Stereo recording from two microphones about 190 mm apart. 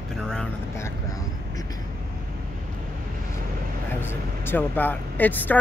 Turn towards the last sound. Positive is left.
turn(degrees=10)  # may be behind; listen again after turning